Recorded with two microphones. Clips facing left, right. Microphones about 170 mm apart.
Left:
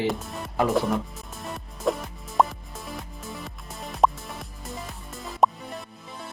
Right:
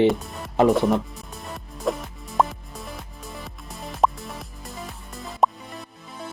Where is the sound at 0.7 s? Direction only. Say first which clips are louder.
Right 4 dB; centre (ahead or behind).